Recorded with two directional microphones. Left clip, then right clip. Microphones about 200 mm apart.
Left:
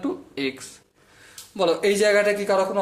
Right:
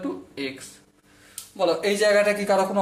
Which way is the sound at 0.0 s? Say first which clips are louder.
Left 3 dB; 35° left (ahead or behind).